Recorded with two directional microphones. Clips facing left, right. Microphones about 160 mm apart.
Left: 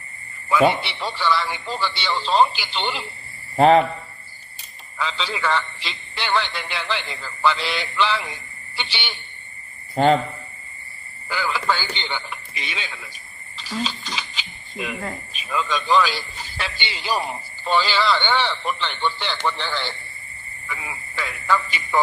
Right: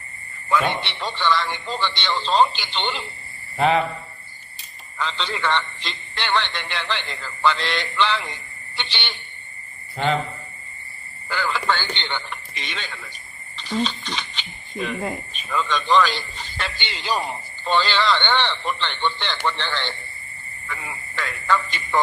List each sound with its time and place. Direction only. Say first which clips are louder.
0.5 s a man's voice: left 4 dB; 5° left (ahead or behind)
3.6 s speech: left 5 dB; 40° left (ahead or behind)
4.9 s a man's voice: even; 5° left (ahead or behind)
9.9 s a man's voice: left 6 dB; 40° left (ahead or behind)
11.3 s a man's voice: even; 5° left (ahead or behind)